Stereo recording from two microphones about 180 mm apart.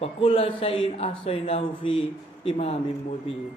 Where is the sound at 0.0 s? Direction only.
30° left (ahead or behind).